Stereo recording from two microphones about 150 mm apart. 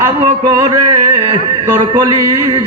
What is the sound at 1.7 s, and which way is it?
Speech, 25° right (ahead or behind).